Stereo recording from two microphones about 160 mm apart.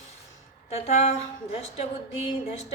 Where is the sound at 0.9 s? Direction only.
45° left (ahead or behind).